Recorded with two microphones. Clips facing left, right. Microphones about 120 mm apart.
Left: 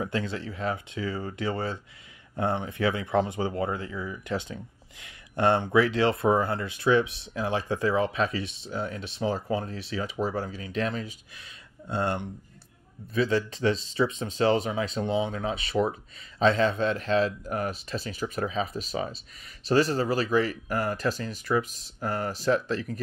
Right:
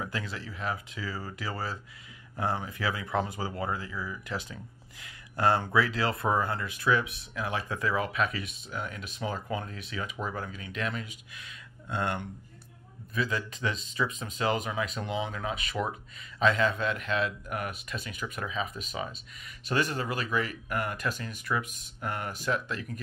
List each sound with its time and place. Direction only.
0.0 s speech: 30° left (ahead or behind)